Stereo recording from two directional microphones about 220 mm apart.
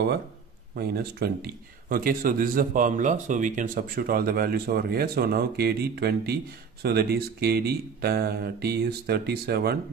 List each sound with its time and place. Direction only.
0.7 s speech: 45° right (ahead or behind)